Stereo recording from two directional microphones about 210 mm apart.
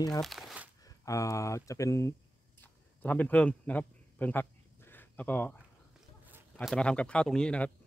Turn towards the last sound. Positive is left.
turn(degrees=5)  # may be behind; listen again after turning